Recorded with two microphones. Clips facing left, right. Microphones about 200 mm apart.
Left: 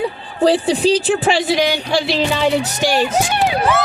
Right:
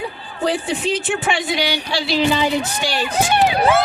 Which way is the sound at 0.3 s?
30° left (ahead or behind).